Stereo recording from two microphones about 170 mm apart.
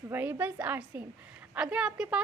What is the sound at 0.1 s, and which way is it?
A woman's voice, 10° right (ahead or behind).